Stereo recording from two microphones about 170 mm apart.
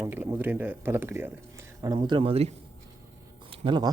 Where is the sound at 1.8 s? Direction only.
25° right (ahead or behind).